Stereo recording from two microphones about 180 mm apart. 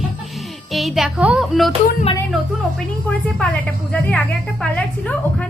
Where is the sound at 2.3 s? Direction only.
Centre (ahead or behind).